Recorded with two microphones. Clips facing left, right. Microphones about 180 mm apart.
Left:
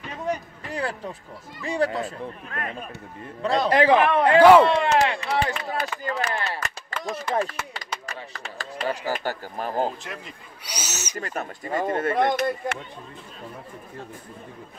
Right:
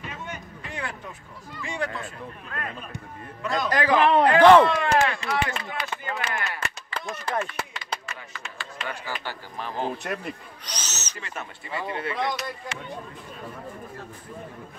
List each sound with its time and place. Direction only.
0.1 s a sound: 35° left (ahead or behind)
1.6 s a man's voice: 35° left (ahead or behind)
4.4 s speech: 10° left (ahead or behind)
4.9 s speech: 30° left (ahead or behind)
10.0 s a man's voice: 65° right (ahead or behind)
10.6 s owl: 10° left (ahead or behind)
11.1 s speech: 45° left (ahead or behind)